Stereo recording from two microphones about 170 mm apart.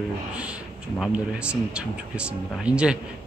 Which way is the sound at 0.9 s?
5° right (ahead or behind).